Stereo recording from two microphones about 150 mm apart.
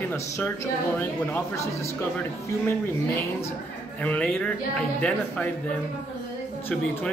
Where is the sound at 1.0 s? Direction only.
15° left (ahead or behind).